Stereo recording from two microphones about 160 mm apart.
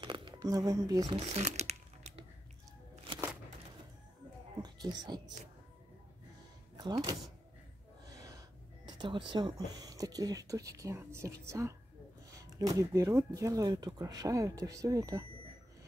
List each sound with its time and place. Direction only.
0.0 s speech: 30° right (ahead or behind)
1.2 s crumpling: 45° right (ahead or behind)
4.6 s a sound: 25° right (ahead or behind)
6.8 s a woman's voice: 30° right (ahead or behind)